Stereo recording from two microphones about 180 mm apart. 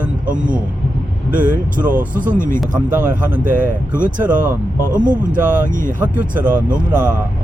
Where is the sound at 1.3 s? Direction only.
50° right (ahead or behind).